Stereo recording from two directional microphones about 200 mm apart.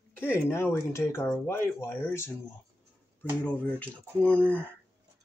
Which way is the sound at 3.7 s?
5° left (ahead or behind).